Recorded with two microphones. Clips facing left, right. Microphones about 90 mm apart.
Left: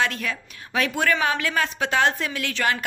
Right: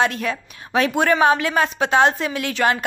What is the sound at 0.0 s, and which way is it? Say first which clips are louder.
A woman's voice: right 5 dB; 25° right (ahead or behind).